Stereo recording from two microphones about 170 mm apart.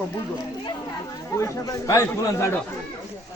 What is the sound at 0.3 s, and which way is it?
Speech, 25° left (ahead or behind).